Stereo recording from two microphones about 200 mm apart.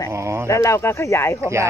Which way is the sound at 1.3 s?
15° right (ahead or behind).